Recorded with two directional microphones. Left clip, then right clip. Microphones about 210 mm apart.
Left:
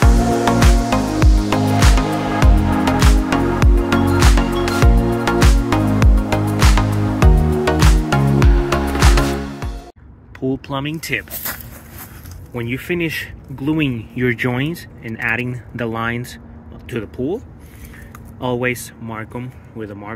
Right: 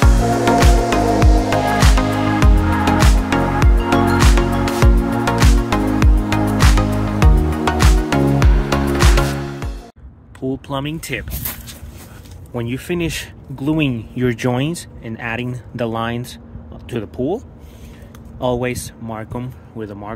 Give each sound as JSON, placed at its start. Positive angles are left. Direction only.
{"t": 0.0, "sound": "music", "side_deg": 0}
{"t": 10.4, "sound": "speech", "side_deg": -5}
{"t": 12.5, "sound": "speech", "side_deg": -15}
{"t": 18.4, "sound": "speech", "side_deg": -10}